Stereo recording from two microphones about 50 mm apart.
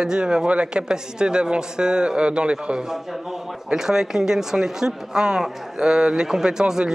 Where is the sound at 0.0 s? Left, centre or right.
Centre.